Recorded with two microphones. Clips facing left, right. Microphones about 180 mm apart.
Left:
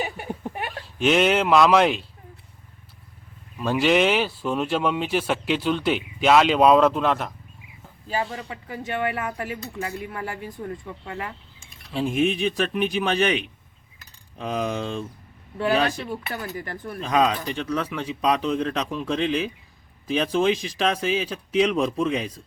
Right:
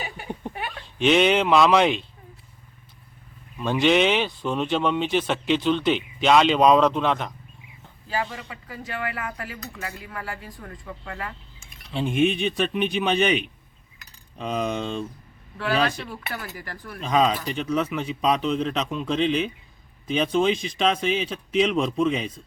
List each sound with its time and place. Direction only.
0.9 s speech: 5° left (ahead or behind)
3.6 s speech: 5° left (ahead or behind)
8.1 s speech: 30° left (ahead or behind)
11.9 s speech: centre (ahead or behind)
16.3 s speech: 20° left (ahead or behind)
17.0 s speech: centre (ahead or behind)